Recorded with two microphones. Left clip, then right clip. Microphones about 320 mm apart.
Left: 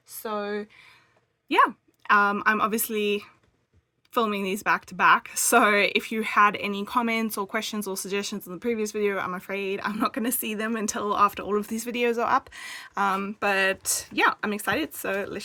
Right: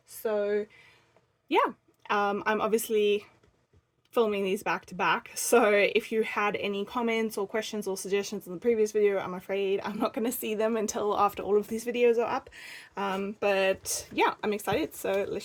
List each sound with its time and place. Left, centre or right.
0.3 s speech: left
1.5 s a sound: left
2.3 s speech: left